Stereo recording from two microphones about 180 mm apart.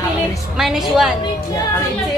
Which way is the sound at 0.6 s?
Centre (ahead or behind).